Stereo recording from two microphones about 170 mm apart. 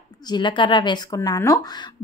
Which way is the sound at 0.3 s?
25° left (ahead or behind).